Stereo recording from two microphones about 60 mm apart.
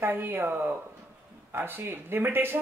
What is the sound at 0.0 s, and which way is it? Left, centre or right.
A woman's voice, right.